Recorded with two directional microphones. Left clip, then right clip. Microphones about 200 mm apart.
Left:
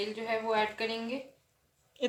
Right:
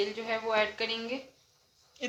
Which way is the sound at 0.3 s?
15° right (ahead or behind).